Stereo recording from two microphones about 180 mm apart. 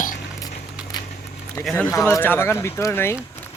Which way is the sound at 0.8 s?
5° right (ahead or behind).